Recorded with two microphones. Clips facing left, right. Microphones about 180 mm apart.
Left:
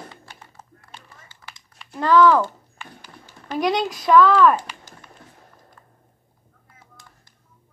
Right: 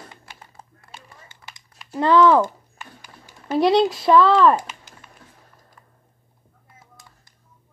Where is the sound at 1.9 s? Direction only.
25° right (ahead or behind).